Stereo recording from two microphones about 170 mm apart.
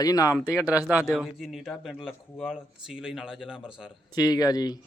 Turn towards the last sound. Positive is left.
turn(degrees=25)  # may be behind; listen again after turning